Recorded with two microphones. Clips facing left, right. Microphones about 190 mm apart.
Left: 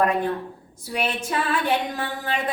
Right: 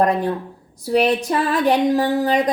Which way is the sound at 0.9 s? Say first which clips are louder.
Right 9 dB; 35° right (ahead or behind).